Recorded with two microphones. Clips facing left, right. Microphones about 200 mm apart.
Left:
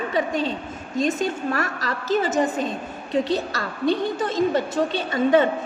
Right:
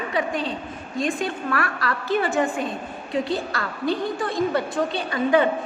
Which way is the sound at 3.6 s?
20° left (ahead or behind).